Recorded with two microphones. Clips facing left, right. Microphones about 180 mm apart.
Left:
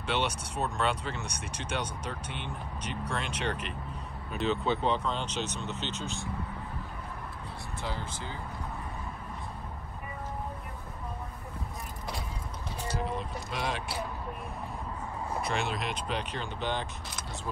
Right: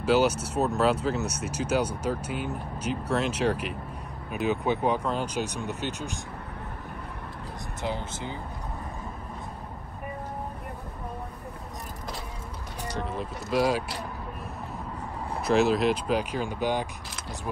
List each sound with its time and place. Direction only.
0.0 s speech: 5° right (ahead or behind)
7.8 s speech: 20° right (ahead or behind)
12.9 s speech: centre (ahead or behind)
15.4 s speech: centre (ahead or behind)